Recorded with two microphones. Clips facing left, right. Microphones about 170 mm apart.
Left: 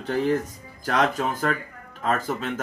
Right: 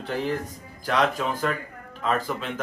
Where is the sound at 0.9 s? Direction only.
45° left (ahead or behind).